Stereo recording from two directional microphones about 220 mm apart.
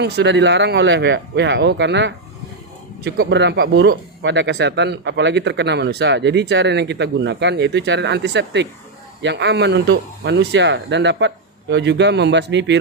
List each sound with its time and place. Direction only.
0.0 s speech: 50° right (ahead or behind)